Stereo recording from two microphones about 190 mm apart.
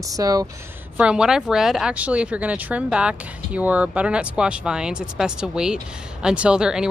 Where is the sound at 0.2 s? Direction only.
20° right (ahead or behind).